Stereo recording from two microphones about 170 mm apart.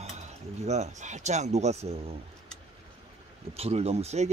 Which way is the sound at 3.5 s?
35° right (ahead or behind).